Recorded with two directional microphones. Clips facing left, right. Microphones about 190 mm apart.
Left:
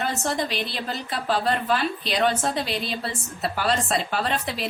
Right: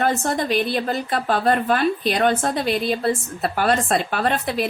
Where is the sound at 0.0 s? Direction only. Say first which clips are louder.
Right 5 dB; 50° right (ahead or behind).